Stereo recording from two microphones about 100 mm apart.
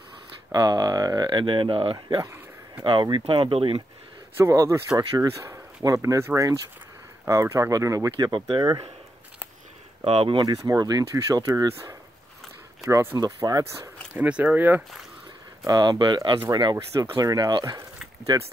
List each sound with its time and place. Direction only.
0.5 s speech: 40° right (ahead or behind); by 2.0 s 60° right (ahead or behind)
2.0 s speech: 40° right (ahead or behind)
2.8 s speech: 55° right (ahead or behind)
4.4 s speech: 30° right (ahead or behind)
10.0 s speech: 75° right (ahead or behind)
10.4 s speech: 40° right (ahead or behind)
14.1 s speech: 15° right (ahead or behind)
15.6 s speech: 40° right (ahead or behind)
16.7 s speech: 30° right (ahead or behind); by 18.5 s 45° right (ahead or behind)